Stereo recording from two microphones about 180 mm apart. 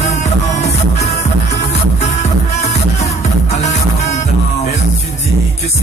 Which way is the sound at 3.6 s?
40° left (ahead or behind).